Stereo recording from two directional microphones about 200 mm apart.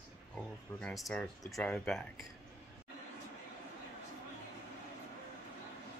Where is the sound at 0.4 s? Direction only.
5° left (ahead or behind).